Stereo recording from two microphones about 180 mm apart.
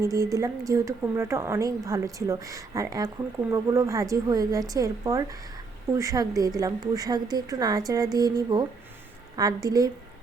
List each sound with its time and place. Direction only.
0.0 s a woman's voice: 20° right (ahead or behind)